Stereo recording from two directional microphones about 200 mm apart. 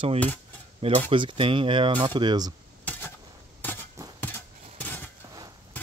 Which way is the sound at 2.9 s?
10° left (ahead or behind).